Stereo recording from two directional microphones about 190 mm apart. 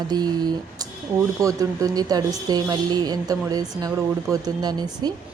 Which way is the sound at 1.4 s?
20° right (ahead or behind).